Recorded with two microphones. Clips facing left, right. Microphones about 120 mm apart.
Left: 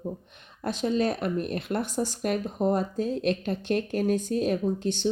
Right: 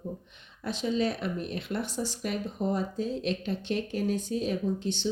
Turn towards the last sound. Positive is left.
turn(degrees=50)  # may be behind; listen again after turning